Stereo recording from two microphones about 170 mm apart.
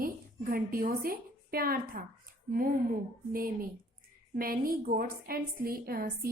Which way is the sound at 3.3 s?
55° right (ahead or behind).